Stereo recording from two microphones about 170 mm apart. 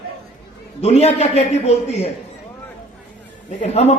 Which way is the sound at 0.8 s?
40° left (ahead or behind).